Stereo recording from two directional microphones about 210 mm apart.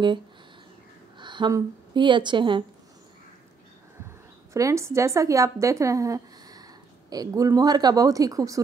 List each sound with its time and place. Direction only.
1.1 s a woman's voice: 20° right (ahead or behind)
4.6 s speech: 15° right (ahead or behind)